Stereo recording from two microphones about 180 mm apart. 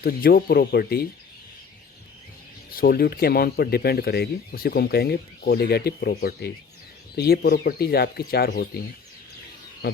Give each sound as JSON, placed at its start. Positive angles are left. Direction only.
{"t": 0.0, "sound": "speech", "side_deg": 55}
{"t": 2.7, "sound": "speech", "side_deg": 55}